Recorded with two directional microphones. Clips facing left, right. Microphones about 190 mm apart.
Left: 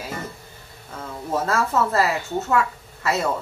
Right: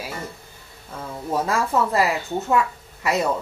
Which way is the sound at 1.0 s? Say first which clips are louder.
Right 1 dB; 15° right (ahead or behind).